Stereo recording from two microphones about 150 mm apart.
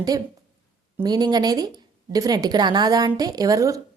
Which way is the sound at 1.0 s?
25° right (ahead or behind).